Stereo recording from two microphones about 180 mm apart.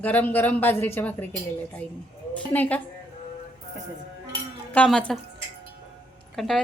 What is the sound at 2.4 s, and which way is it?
Speech, 10° left (ahead or behind).